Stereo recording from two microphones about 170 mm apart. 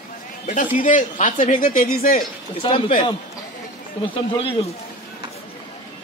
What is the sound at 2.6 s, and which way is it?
Speech, 30° left (ahead or behind).